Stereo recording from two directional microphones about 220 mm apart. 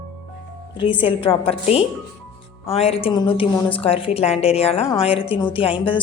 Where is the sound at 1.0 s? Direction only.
25° left (ahead or behind).